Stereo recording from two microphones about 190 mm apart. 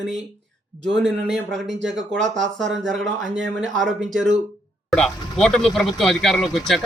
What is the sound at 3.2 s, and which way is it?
Speech, 80° right.